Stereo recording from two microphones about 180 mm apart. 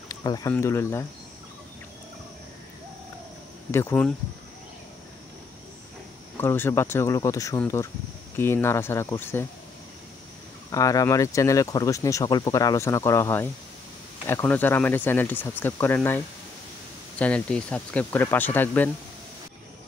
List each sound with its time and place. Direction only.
0.1 s speech: 20° left (ahead or behind)
3.7 s speech: 10° left (ahead or behind)
6.3 s speech: 10° left (ahead or behind)
10.7 s speech: 20° left (ahead or behind)
17.2 s speech: 5° left (ahead or behind)